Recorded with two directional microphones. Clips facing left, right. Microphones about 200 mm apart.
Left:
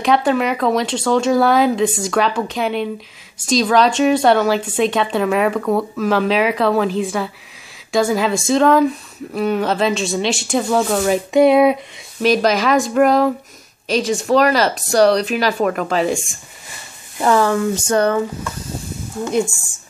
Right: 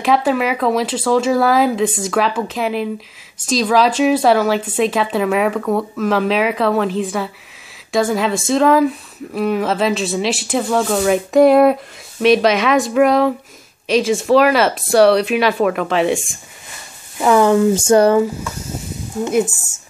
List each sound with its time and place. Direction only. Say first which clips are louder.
0.0 s speech: even; centre (ahead or behind)
17.4 s speech: right 4 dB; 20° right (ahead or behind)
19.1 s speech: right 3 dB; 15° right (ahead or behind)